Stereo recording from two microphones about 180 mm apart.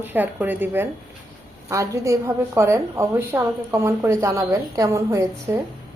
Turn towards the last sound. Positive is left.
turn(degrees=-15)  # may be behind; listen again after turning